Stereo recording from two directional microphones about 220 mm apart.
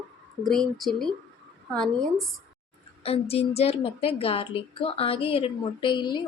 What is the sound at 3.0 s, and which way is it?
A woman's voice, 25° left (ahead or behind).